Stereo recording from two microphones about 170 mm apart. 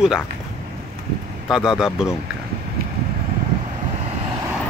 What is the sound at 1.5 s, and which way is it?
Speech, 5° right (ahead or behind).